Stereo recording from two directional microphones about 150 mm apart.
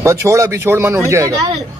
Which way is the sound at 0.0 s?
20° right (ahead or behind).